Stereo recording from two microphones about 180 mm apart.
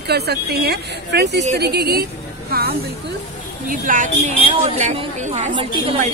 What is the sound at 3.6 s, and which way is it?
Speech, 45° right (ahead or behind).